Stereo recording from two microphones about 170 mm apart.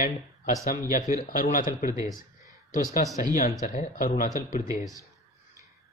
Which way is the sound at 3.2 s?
55° left (ahead or behind).